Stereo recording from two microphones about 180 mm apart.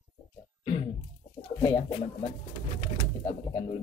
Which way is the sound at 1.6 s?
30° left (ahead or behind).